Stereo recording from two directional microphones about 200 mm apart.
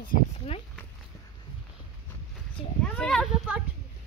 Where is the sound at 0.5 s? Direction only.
30° left (ahead or behind).